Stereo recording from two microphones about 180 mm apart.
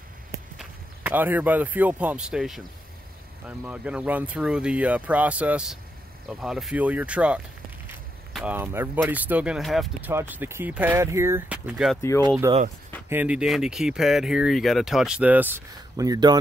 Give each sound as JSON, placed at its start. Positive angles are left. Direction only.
{"t": 0.6, "sound": "speech", "side_deg": -10}
{"t": 8.3, "sound": "a sound", "side_deg": 0}
{"t": 8.5, "sound": "speech", "side_deg": -15}
{"t": 12.5, "sound": "speech", "side_deg": -20}
{"t": 13.1, "sound": "speech", "side_deg": -10}